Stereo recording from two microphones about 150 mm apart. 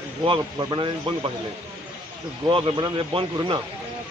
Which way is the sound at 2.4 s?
35° right (ahead or behind).